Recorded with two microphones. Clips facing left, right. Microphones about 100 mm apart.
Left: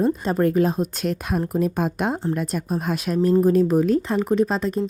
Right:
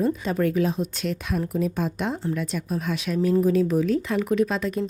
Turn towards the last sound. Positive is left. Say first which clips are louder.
# left 2 dB
turn(degrees=35)  # may be behind; listen again after turning